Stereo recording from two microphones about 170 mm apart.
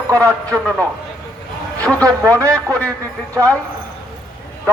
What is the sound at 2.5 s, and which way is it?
Speech, 5° left (ahead or behind).